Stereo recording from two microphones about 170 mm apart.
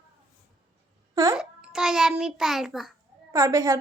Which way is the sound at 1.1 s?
20° right (ahead or behind).